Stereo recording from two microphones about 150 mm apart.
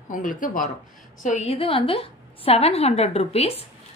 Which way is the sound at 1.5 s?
40° left (ahead or behind).